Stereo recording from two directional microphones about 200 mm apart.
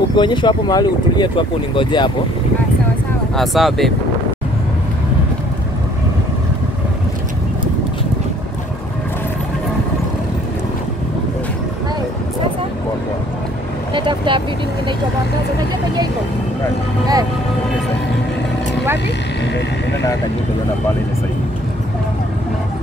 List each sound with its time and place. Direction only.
0.1 s speech: 25° left (ahead or behind)
3.3 s speech: centre (ahead or behind)
13.9 s vehicle: 25° right (ahead or behind)